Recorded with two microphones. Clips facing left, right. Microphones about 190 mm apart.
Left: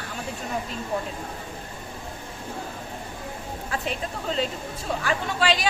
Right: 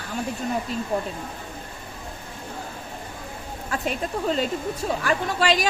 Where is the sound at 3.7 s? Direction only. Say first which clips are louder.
Right 4 dB; 45° right (ahead or behind).